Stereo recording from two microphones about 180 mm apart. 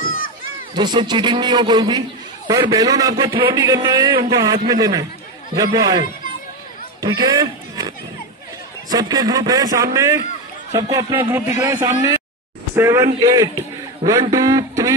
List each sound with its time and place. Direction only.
0.7 s a man's voice: 25° right (ahead or behind)
7.0 s run: 20° right (ahead or behind)
8.9 s a man's voice: 20° right (ahead or behind)